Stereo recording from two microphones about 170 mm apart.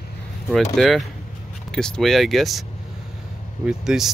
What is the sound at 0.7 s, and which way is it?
Speech, centre (ahead or behind).